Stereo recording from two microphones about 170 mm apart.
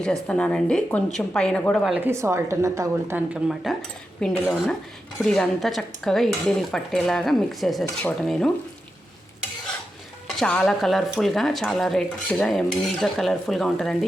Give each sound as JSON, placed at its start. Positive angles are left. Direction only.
{"t": 0.0, "sound": "speech", "side_deg": 5}
{"t": 2.0, "sound": "speech", "side_deg": -15}
{"t": 10.2, "sound": "speech", "side_deg": 5}